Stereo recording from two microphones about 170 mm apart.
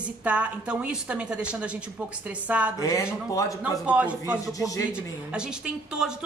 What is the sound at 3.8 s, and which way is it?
Speech, 5° right (ahead or behind).